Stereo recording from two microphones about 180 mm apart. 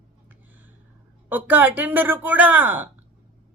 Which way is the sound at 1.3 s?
10° right (ahead or behind).